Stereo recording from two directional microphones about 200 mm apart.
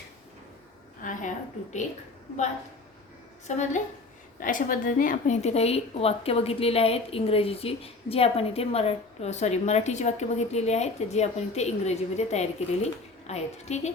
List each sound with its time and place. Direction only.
1.0 s a woman's voice: 40° left (ahead or behind)
3.4 s a woman's voice: 35° left (ahead or behind)